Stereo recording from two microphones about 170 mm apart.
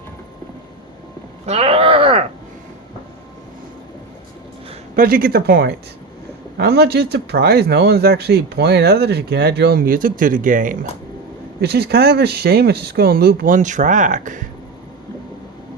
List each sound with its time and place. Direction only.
1.5 s speech: 35° right (ahead or behind)
4.9 s speech: 55° right (ahead or behind)
11.6 s speech: 70° right (ahead or behind); by 14.4 s 45° right (ahead or behind)